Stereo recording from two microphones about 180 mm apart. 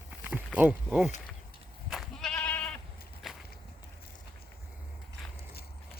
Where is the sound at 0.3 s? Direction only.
10° right (ahead or behind).